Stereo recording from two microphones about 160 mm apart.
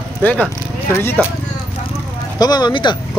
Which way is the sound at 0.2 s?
10° left (ahead or behind).